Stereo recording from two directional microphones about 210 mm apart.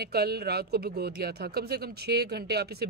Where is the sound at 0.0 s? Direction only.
50° right (ahead or behind).